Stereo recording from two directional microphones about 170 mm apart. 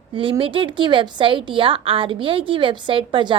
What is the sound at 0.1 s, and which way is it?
A woman's voice, 30° right (ahead or behind).